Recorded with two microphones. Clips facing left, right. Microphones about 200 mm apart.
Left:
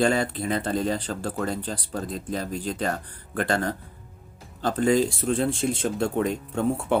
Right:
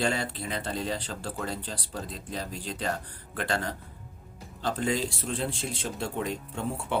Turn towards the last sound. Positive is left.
turn(degrees=50)  # may be behind; listen again after turning